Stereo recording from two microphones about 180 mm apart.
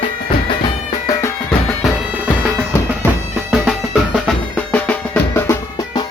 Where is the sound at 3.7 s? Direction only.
Centre (ahead or behind).